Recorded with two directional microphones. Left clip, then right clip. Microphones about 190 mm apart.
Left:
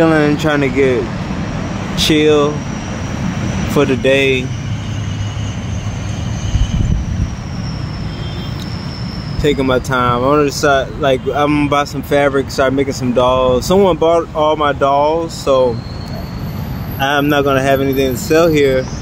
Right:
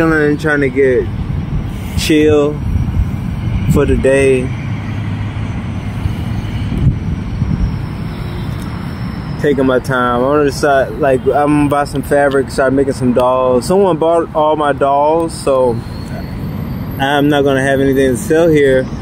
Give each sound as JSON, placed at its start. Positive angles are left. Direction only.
{"t": 0.0, "sound": "speech", "side_deg": 0}
{"t": 2.0, "sound": "speech", "side_deg": 5}
{"t": 3.7, "sound": "speech", "side_deg": 5}
{"t": 9.4, "sound": "speech", "side_deg": 20}
{"t": 17.0, "sound": "speech", "side_deg": 0}
{"t": 17.8, "sound": "speech", "side_deg": 20}
{"t": 18.3, "sound": "speech", "side_deg": 5}